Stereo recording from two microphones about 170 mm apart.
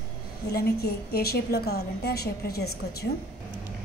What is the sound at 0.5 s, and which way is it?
A woman's voice, 70° left (ahead or behind).